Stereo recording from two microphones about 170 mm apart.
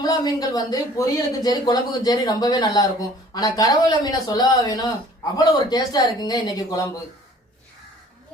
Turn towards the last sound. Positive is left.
turn(degrees=20)  # may be behind; listen again after turning